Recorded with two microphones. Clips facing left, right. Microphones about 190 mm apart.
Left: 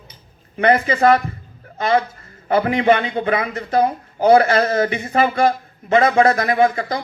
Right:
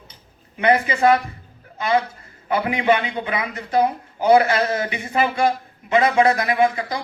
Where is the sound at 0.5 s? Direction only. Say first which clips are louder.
Left 2 dB; 45° left (ahead or behind).